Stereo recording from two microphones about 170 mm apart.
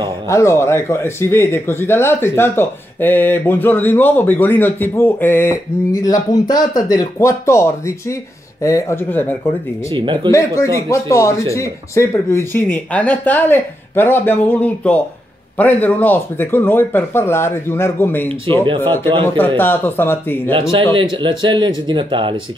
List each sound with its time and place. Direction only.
0.3 s speech: 15° left (ahead or behind)
9.9 s speech: 30° right (ahead or behind)
10.3 s speech: 20° left (ahead or behind)
20.9 s speech: 30° right (ahead or behind)